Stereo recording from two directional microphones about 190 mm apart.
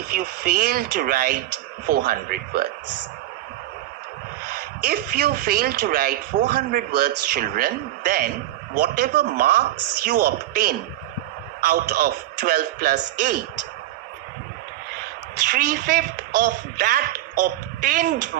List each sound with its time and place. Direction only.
0.1 s a woman's voice: 50° right (ahead or behind)
4.4 s a woman's voice: 55° right (ahead or behind)
15.4 s a woman's voice: 45° right (ahead or behind)